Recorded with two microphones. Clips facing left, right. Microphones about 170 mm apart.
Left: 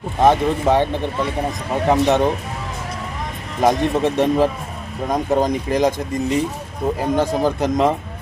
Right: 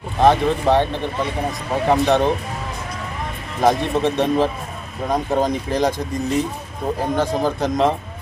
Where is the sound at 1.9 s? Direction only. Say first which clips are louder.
Left 1 dB; 20° left (ahead or behind).